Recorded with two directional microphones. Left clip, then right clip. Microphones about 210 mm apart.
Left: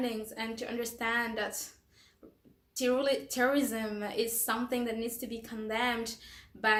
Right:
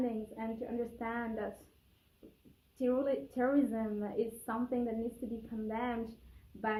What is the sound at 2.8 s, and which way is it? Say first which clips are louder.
A woman's voice: left 4 dB; 10° left (ahead or behind).